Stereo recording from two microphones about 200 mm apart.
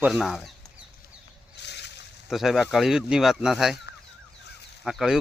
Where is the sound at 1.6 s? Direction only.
60° left (ahead or behind).